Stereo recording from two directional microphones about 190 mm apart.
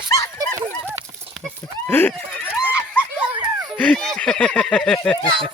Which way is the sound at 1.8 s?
10° left (ahead or behind).